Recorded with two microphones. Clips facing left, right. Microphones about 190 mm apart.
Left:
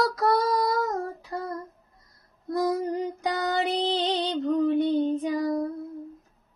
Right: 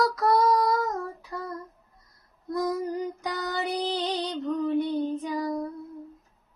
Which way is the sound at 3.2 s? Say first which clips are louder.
Left 5 dB; 55° left (ahead or behind).